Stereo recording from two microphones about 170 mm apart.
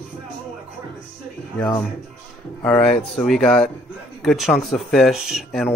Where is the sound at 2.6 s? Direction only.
5° left (ahead or behind).